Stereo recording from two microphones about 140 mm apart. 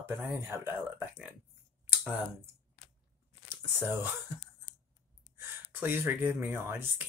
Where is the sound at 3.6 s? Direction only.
15° right (ahead or behind).